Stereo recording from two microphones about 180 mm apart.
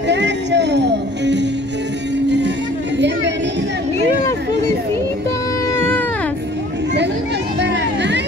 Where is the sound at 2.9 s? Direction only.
75° right (ahead or behind).